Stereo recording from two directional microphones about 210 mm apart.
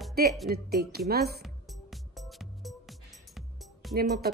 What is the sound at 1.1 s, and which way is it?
Speech, 50° right (ahead or behind).